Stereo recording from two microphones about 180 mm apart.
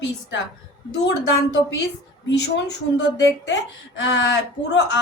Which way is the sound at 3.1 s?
90° left.